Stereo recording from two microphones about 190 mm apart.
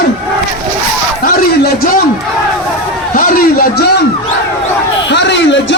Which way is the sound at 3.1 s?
45° left (ahead or behind).